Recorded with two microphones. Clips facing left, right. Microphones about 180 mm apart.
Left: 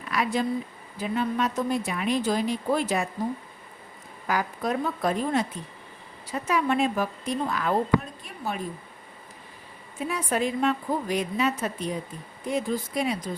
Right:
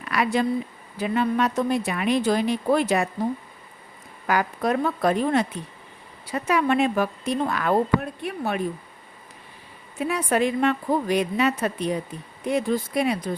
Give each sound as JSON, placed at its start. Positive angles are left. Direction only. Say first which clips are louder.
{"t": 0.1, "sound": "a woman's voice", "louder": "right 3 dB", "side_deg": -70}
{"t": 4.3, "sound": "a woman's voice", "louder": "right 4 dB", "side_deg": -70}
{"t": 10.0, "sound": "a woman's voice", "louder": "right 4 dB", "side_deg": -65}